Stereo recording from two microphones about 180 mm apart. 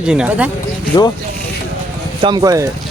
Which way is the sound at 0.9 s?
25° left (ahead or behind).